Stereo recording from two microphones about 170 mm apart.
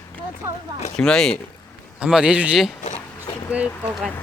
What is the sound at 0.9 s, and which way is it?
A man's voice, 5° left (ahead or behind).